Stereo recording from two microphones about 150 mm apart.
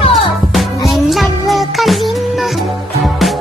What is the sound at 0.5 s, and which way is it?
Music, centre (ahead or behind).